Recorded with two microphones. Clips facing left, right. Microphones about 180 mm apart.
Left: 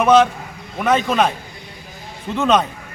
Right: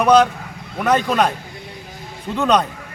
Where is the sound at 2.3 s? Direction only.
Centre (ahead or behind).